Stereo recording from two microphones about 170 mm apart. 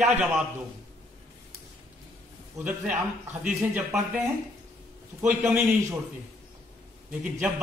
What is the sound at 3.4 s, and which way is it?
A man's voice, 5° right (ahead or behind).